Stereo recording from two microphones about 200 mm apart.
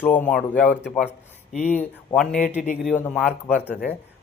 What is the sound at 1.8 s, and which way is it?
Speech, 5° left (ahead or behind).